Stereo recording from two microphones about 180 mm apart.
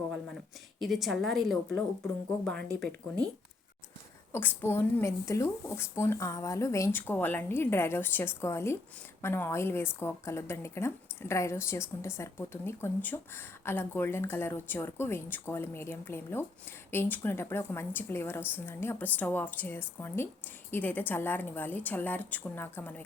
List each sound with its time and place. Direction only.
0.8 s a woman's voice: centre (ahead or behind)
4.3 s speech: 10° left (ahead or behind)